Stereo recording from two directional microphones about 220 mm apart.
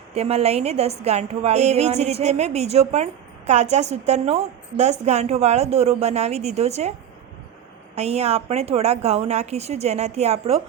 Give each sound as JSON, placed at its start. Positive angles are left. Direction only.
{"t": 0.1, "sound": "a woman's voice", "side_deg": -30}
{"t": 7.9, "sound": "a woman's voice", "side_deg": -30}